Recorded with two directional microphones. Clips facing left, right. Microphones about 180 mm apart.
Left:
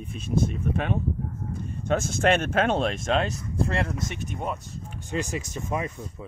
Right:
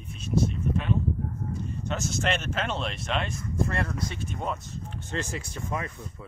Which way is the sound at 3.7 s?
25° left (ahead or behind).